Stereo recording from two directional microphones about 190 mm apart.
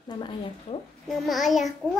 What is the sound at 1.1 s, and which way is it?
Speech, centre (ahead or behind).